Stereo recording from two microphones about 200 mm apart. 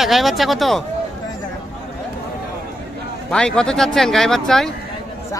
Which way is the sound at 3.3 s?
5° left (ahead or behind).